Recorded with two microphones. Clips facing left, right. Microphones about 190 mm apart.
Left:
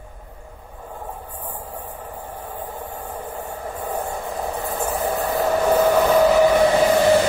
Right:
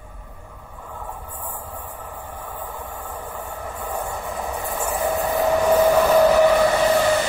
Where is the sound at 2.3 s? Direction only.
20° left (ahead or behind).